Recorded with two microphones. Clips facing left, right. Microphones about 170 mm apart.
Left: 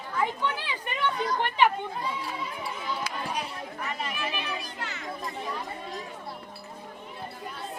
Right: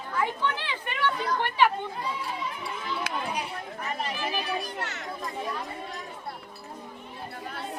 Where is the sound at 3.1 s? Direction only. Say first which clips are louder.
Right 3 dB; 60° right (ahead or behind).